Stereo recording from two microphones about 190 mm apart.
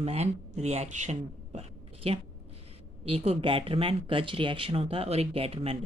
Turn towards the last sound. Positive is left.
turn(degrees=-30)  # may be behind; listen again after turning